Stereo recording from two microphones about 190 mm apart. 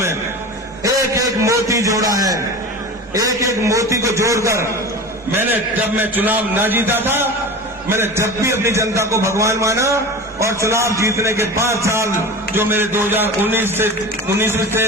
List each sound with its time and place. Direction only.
0.9 s a man's voice: 15° right (ahead or behind)